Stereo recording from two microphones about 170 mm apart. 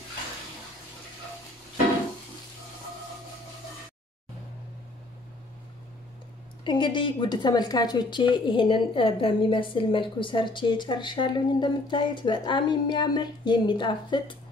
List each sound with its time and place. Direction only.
6.6 s a woman's voice: 30° left (ahead or behind)